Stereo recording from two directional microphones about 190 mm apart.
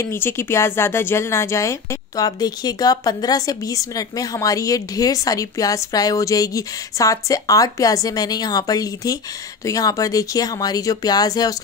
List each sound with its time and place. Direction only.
0.0 s speech: 10° left (ahead or behind)